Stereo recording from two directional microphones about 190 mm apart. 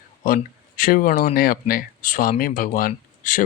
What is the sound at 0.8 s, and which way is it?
Speech, 45° left (ahead or behind).